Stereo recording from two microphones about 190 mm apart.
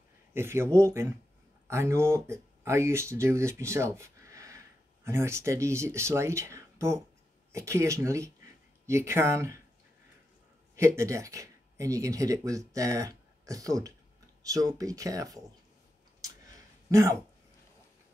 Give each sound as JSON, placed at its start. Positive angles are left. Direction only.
{"t": 0.3, "sound": "speech", "side_deg": -15}
{"t": 11.0, "sound": "speech", "side_deg": -15}
{"t": 16.9, "sound": "speech", "side_deg": -15}